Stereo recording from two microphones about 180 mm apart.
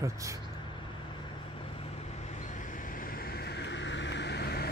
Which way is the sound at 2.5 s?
50° left (ahead or behind).